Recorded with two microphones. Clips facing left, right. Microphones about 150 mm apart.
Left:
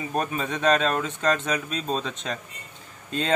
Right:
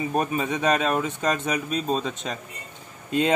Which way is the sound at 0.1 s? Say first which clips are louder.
Left 1 dB; 10° right (ahead or behind).